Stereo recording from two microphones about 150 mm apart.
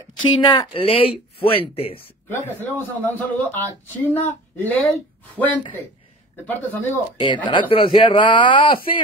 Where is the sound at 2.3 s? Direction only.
15° left (ahead or behind).